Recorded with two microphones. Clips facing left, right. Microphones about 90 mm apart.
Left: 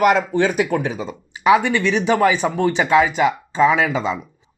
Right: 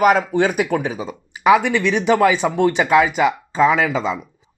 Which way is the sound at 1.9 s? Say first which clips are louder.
Right 2 dB; 15° right (ahead or behind).